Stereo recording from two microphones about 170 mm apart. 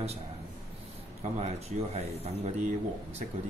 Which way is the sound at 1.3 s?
40° right (ahead or behind).